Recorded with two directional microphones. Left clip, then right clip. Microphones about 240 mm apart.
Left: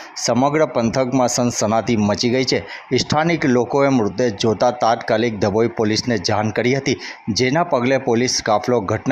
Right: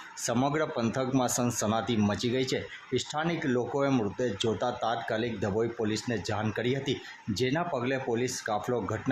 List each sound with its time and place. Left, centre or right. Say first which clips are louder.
0.3 s speech: left 12 dB; left